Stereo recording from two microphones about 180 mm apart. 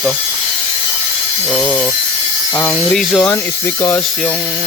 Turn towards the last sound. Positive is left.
turn(degrees=10)  # may be behind; listen again after turning